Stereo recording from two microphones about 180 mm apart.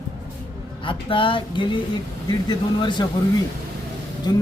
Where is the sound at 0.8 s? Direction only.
30° left (ahead or behind).